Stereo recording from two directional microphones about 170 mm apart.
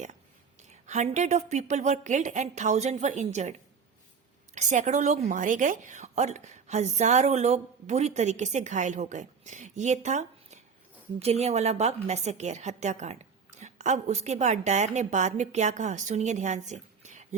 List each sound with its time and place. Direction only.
0.7 s a woman's voice: 40° right (ahead or behind)
4.5 s a woman's voice: 45° right (ahead or behind)